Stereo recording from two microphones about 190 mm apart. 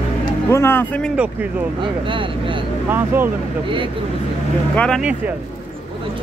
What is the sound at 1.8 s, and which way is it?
Speech, 25° right (ahead or behind).